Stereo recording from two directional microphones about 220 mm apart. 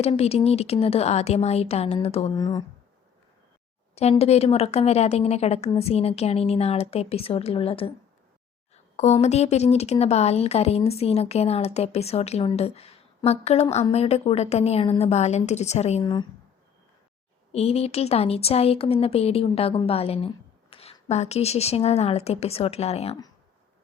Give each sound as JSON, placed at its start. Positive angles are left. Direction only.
{"t": 0.0, "sound": "speech", "side_deg": 30}
{"t": 2.3, "sound": "speech", "side_deg": 15}
{"t": 3.9, "sound": "speech", "side_deg": 30}
{"t": 17.5, "sound": "speech", "side_deg": 25}